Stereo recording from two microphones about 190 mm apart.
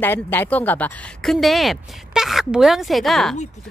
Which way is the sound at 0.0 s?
10° left (ahead or behind).